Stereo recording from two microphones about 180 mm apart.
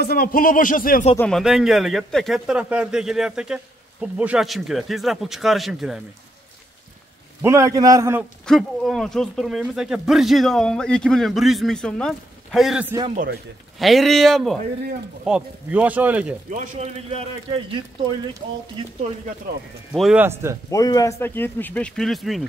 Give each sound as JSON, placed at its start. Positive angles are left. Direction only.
{"t": 0.0, "sound": "speech", "side_deg": 60}
{"t": 1.1, "sound": "speech", "side_deg": 10}
{"t": 1.4, "sound": "speech", "side_deg": 0}
{"t": 7.4, "sound": "speech", "side_deg": -15}
{"t": 8.5, "sound": "speech", "side_deg": 0}
{"t": 16.4, "sound": "speech", "side_deg": -40}
{"t": 19.9, "sound": "speech", "side_deg": -5}
{"t": 20.7, "sound": "speech", "side_deg": 20}